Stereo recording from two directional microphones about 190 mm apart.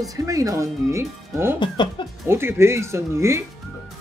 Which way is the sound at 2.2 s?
10° right (ahead or behind).